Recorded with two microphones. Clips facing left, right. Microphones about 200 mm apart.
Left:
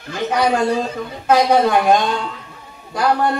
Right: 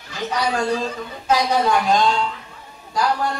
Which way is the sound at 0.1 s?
55° left (ahead or behind).